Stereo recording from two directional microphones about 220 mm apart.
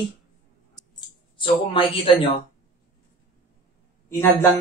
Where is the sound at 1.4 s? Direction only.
25° left (ahead or behind).